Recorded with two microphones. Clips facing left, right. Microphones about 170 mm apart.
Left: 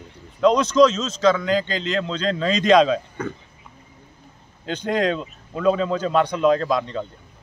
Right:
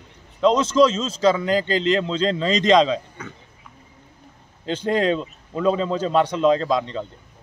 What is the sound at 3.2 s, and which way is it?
Speech, 55° left (ahead or behind).